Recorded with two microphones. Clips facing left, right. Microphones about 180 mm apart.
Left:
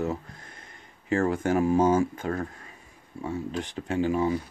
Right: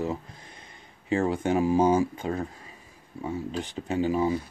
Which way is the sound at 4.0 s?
25° right (ahead or behind).